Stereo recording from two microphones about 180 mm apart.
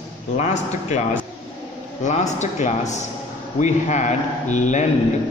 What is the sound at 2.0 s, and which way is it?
A man's voice, 40° left (ahead or behind).